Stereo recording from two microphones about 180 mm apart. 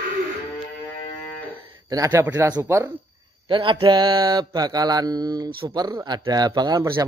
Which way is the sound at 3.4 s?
25° right (ahead or behind).